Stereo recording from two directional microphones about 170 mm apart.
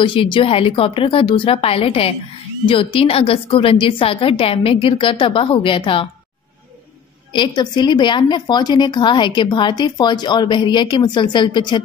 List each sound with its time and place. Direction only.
0.0 s a woman's voice: 30° left (ahead or behind)
7.3 s a woman's voice: 25° left (ahead or behind)